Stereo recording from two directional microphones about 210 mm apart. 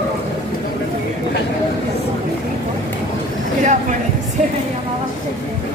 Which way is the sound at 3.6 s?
35° right (ahead or behind).